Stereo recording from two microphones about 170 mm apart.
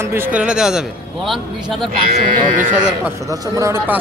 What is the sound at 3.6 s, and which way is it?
Speech, 15° right (ahead or behind).